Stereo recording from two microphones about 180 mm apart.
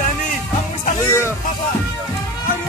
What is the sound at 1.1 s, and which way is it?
Music, 15° left (ahead or behind).